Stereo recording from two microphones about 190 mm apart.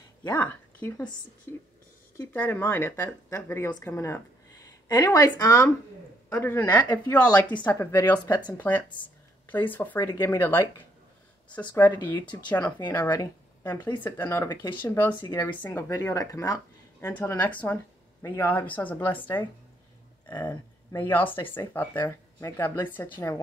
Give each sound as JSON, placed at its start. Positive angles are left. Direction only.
{"t": 0.3, "sound": "a woman's voice", "side_deg": 10}
{"t": 2.1, "sound": "speech", "side_deg": 10}